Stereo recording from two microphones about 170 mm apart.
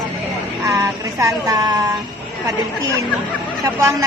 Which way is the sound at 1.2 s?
20° right (ahead or behind).